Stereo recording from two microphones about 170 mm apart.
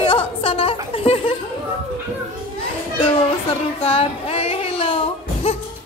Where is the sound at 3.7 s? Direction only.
35° left (ahead or behind).